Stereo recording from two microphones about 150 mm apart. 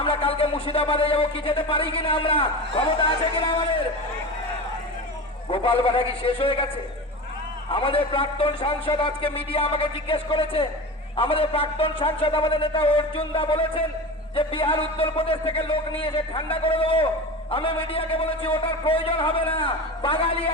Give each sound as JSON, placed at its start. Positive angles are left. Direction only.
{"t": 0.0, "sound": "speech", "side_deg": 35}
{"t": 5.5, "sound": "a man's voice", "side_deg": 40}
{"t": 7.7, "sound": "a man's voice", "side_deg": 35}